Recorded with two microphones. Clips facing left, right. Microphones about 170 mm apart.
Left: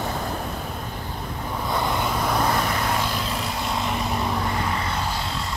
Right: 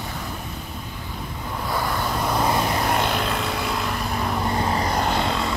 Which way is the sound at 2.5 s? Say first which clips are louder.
Right 2 dB; 25° right (ahead or behind).